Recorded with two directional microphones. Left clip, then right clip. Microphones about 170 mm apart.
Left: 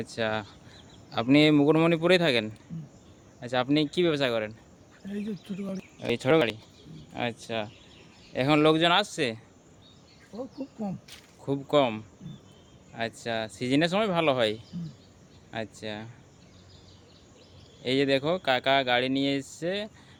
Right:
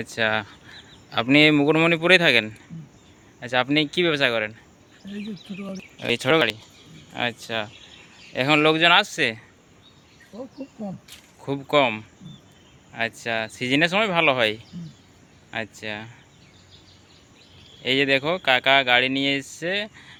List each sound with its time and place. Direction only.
0.0 s speech: 5° right (ahead or behind)
5.0 s speech: 20° left (ahead or behind)
6.0 s speech: centre (ahead or behind)
10.3 s speech: 15° left (ahead or behind)
11.4 s speech: centre (ahead or behind)
17.8 s speech: centre (ahead or behind)